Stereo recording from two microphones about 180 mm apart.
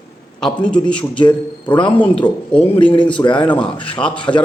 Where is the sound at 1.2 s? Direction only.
25° left (ahead or behind).